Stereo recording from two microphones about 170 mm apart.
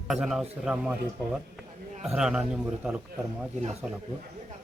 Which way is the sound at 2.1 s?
5° right (ahead or behind).